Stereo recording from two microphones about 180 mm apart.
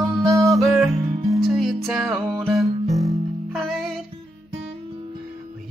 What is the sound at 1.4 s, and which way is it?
Music, centre (ahead or behind).